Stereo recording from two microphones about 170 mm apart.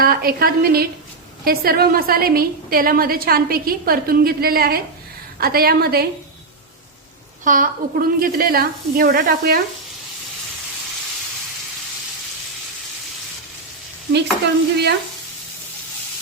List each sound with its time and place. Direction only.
0.0 s a woman's voice: 60° right (ahead or behind)
7.4 s a woman's voice: 55° right (ahead or behind)
14.1 s stir: 80° right